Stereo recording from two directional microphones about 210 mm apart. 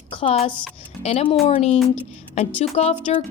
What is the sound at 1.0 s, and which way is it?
Speech, 30° left (ahead or behind).